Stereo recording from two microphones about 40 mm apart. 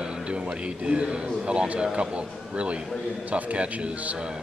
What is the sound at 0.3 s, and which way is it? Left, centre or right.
A man's voice, right.